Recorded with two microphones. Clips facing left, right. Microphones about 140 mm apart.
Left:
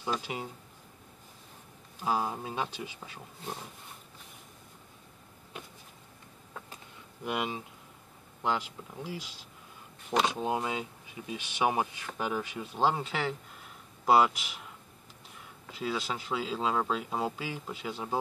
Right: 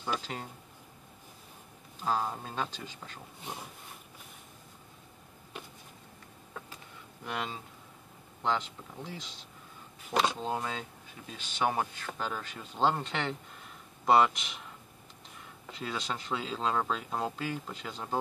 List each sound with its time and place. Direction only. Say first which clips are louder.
0.2 s speech: left 3 dB; 10° left (ahead or behind)
2.0 s speech: left 1 dB; 10° left (ahead or behind)
7.2 s speech: left 4 dB; 15° left (ahead or behind)
15.7 s speech: left 3 dB; 5° left (ahead or behind)